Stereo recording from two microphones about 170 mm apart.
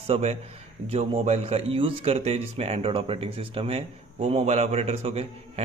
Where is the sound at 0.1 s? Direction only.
40° right (ahead or behind).